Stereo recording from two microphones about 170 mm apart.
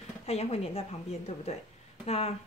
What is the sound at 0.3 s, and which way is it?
A woman's voice, 35° left (ahead or behind).